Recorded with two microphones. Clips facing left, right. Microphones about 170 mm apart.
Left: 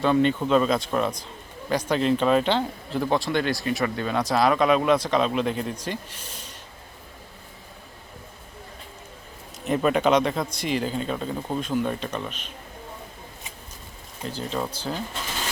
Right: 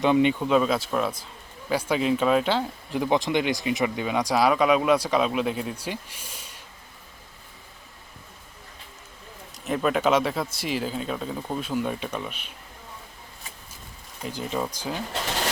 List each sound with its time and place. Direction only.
0.0 s speech: 15° right (ahead or behind)
0.4 s speech: 5° right (ahead or behind)
9.6 s speech: centre (ahead or behind)
14.3 s speech: 15° right (ahead or behind)